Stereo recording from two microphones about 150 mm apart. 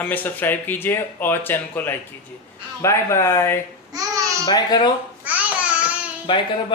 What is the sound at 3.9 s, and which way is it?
Babbling, 20° right (ahead or behind).